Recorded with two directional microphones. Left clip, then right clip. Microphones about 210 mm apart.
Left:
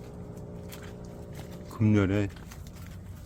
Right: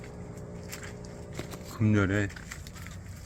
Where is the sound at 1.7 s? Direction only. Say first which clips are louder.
Left 1 dB; 20° left (ahead or behind).